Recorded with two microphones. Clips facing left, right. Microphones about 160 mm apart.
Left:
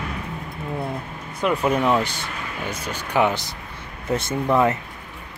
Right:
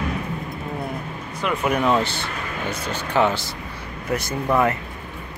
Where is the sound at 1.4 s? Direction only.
30° left (ahead or behind).